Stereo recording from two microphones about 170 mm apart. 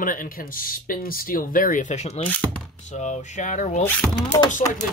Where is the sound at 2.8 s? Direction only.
45° left (ahead or behind).